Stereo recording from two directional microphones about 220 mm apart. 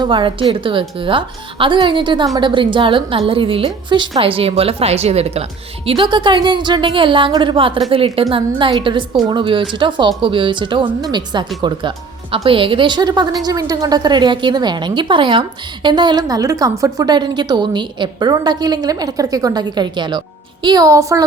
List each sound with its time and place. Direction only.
0.0 s a woman's voice: 20° right (ahead or behind)